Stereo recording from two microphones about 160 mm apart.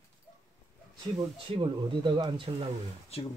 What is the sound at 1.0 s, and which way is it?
Speech, 30° right (ahead or behind).